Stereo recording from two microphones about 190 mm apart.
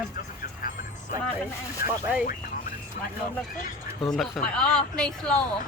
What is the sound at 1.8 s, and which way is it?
Speech, 50° left (ahead or behind).